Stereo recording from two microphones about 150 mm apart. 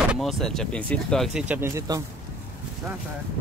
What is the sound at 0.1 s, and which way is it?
Speech, centre (ahead or behind).